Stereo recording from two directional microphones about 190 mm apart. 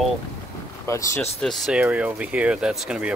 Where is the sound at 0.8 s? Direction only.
15° left (ahead or behind).